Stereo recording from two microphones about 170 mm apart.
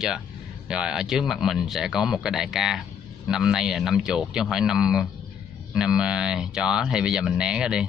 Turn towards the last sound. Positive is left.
turn(degrees=-5)  # may be behind; listen again after turning